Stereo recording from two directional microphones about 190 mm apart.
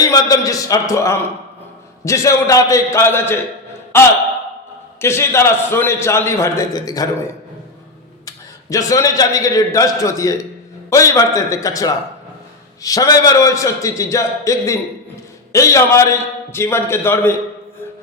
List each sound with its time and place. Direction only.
0.0 s a man's voice: 20° left (ahead or behind)
4.9 s a man's voice: 15° left (ahead or behind)
8.7 s a man's voice: 15° left (ahead or behind)